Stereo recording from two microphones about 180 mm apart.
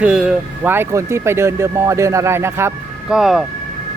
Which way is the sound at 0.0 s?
5° right (ahead or behind).